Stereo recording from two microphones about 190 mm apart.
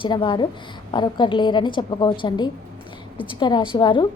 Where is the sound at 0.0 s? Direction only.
25° left (ahead or behind).